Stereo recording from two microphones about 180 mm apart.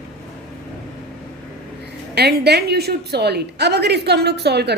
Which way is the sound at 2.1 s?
65° right (ahead or behind).